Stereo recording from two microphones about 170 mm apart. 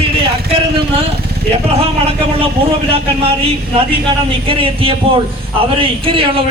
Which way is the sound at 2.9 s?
35° right (ahead or behind).